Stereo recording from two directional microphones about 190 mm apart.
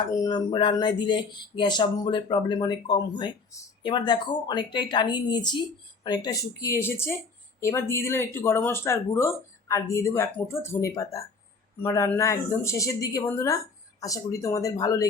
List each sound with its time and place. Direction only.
0.0 s speech: 20° left (ahead or behind)